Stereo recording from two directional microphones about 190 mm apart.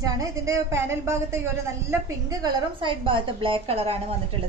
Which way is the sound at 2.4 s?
25° right (ahead or behind).